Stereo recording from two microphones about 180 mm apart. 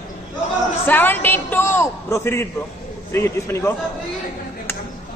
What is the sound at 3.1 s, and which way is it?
Speech, 15° left (ahead or behind).